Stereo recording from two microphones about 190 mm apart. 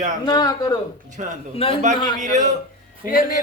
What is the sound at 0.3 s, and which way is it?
Speech, 20° left (ahead or behind).